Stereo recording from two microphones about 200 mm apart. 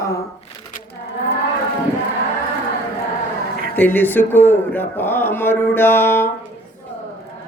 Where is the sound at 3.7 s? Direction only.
10° left (ahead or behind).